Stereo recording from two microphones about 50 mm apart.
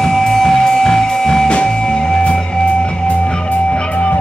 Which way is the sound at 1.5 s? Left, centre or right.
Left.